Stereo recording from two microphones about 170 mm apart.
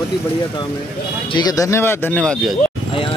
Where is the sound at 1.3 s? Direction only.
25° left (ahead or behind); by 2.5 s 5° left (ahead or behind).